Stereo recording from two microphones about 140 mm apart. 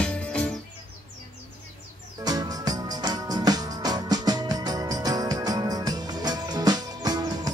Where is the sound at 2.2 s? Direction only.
25° right (ahead or behind).